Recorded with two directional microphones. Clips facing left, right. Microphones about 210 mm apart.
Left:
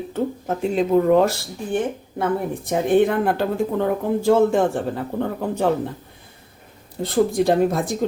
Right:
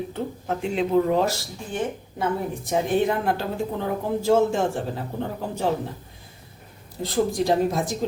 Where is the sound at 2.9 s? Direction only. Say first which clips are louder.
Left 7 dB; 55° left (ahead or behind).